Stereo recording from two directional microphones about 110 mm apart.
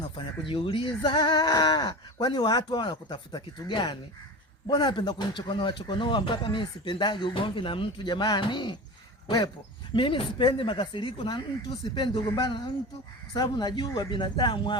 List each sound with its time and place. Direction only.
0.4 s speech: 50° left (ahead or behind)
9.9 s speech: 50° left (ahead or behind)